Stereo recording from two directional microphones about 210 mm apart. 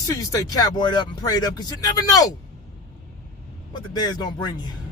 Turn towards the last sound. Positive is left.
turn(degrees=20)  # may be behind; listen again after turning